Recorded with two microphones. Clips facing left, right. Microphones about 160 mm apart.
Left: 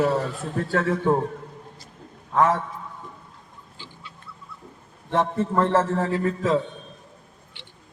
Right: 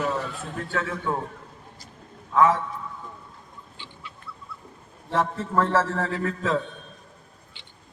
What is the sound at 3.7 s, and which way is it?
Bird, 35° left (ahead or behind).